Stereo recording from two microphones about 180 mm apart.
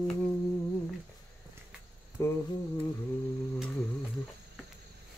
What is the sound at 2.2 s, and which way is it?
Speech, 15° left (ahead or behind).